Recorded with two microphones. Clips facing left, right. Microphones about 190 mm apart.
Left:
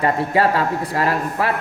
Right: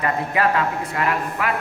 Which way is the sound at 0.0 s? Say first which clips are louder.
Left 4 dB; 30° left (ahead or behind).